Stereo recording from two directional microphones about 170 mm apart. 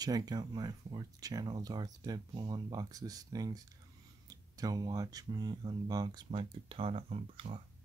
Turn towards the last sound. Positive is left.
turn(degrees=-35)  # may be behind; listen again after turning